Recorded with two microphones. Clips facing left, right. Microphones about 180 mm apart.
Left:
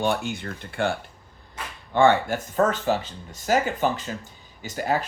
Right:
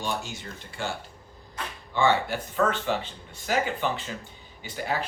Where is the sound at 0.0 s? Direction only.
60° left (ahead or behind).